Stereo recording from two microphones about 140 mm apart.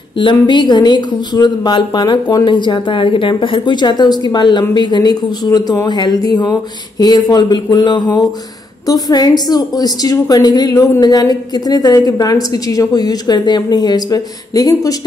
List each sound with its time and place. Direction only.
0.2 s a woman's voice: 35° left (ahead or behind)